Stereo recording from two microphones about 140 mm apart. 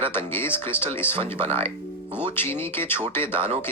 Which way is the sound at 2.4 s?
15° left (ahead or behind).